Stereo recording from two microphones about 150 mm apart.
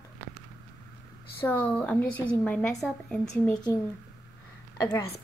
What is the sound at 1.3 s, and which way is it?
A woman's voice, 10° left (ahead or behind).